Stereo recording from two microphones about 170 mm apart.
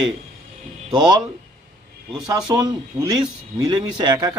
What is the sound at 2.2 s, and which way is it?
A man's voice, 25° right (ahead or behind).